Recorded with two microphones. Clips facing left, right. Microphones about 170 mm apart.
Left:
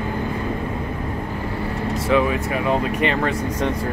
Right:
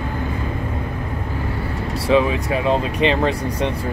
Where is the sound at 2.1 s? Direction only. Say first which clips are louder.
Right 3 dB; 20° right (ahead or behind).